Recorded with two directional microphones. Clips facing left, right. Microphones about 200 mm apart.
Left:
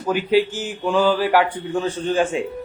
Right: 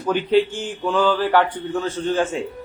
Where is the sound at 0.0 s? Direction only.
10° left (ahead or behind).